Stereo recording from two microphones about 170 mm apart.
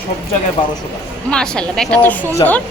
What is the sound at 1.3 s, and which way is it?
A woman's voice, 5° left (ahead or behind).